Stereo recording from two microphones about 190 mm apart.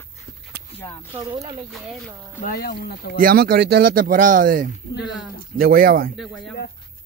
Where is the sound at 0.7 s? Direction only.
30° left (ahead or behind).